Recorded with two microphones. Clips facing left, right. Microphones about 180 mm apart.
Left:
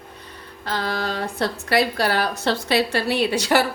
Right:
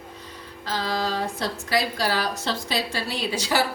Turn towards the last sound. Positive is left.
turn(degrees=65)  # may be behind; listen again after turning